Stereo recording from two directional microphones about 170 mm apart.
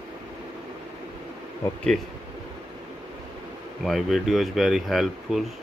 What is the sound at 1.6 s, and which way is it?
Speech, 15° left (ahead or behind).